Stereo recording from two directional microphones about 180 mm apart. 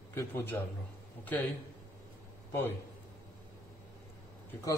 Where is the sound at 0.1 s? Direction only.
15° left (ahead or behind).